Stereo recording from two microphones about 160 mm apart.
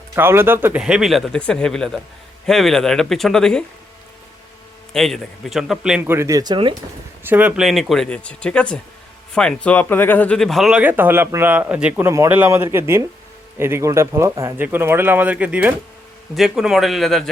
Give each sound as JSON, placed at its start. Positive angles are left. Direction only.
{"t": 0.2, "sound": "speech", "side_deg": -15}
{"t": 4.9, "sound": "speech", "side_deg": 0}
{"t": 6.1, "sound": "speech", "side_deg": -20}
{"t": 7.3, "sound": "speech", "side_deg": -10}